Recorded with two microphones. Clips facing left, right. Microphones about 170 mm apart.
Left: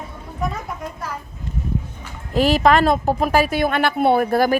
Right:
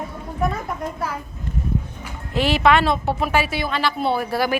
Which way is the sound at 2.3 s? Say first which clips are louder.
Left 2 dB; 40° left (ahead or behind).